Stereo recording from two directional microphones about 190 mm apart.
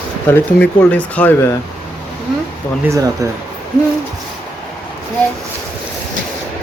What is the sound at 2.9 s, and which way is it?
Speech, 15° right (ahead or behind).